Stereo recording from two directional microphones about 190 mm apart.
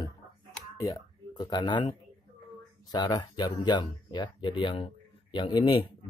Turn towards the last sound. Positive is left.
turn(degrees=25)  # may be behind; listen again after turning